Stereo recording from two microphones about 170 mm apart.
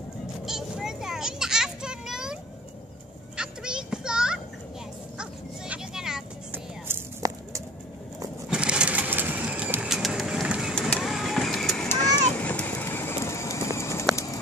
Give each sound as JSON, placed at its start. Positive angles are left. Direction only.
{"t": 0.5, "sound": "a sound", "side_deg": -5}
{"t": 3.3, "sound": "children playing", "side_deg": -5}
{"t": 5.2, "sound": "music", "side_deg": -5}
{"t": 8.5, "sound": "vehicle", "side_deg": -5}
{"t": 10.7, "sound": "vehicle", "side_deg": 5}
{"t": 14.1, "sound": "a sound", "side_deg": 20}